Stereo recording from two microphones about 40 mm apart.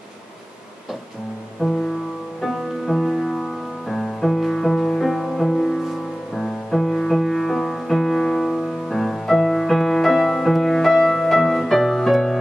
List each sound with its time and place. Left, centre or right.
1.6 s music: centre
2.9 s music: centre